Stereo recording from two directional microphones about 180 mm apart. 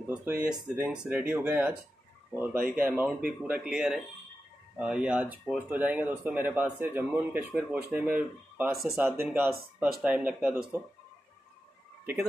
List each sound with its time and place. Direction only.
0.0 s speech: 10° right (ahead or behind)